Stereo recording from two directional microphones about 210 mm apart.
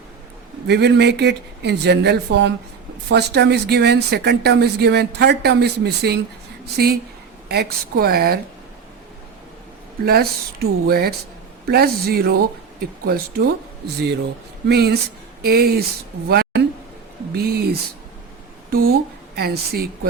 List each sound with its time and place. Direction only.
0.7 s speech: 55° right (ahead or behind)
10.1 s speech: 50° right (ahead or behind)
16.3 s a sound: 50° right (ahead or behind)
18.7 s speech: 45° right (ahead or behind)